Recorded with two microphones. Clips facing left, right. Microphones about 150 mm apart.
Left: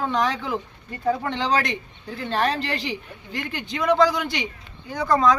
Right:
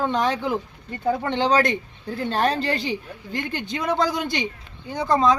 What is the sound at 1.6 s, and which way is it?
Speech, 40° right (ahead or behind).